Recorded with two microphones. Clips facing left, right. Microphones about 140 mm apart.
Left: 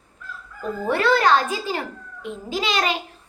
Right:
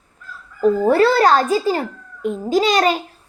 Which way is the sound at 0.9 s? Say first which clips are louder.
Right 3 dB; 35° right (ahead or behind).